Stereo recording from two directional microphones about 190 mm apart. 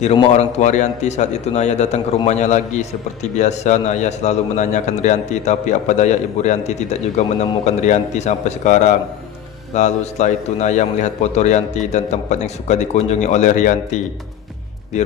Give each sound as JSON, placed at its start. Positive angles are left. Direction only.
{"t": 0.0, "sound": "a man's voice", "side_deg": 35}